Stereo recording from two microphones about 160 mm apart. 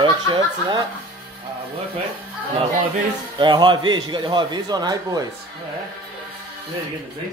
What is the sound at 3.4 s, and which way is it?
A man's voice, 30° right (ahead or behind).